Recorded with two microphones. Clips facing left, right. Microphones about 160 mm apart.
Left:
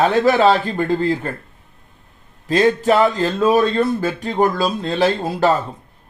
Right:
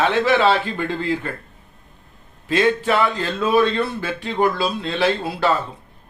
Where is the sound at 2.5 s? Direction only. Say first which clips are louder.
Left 3 dB; 40° left (ahead or behind).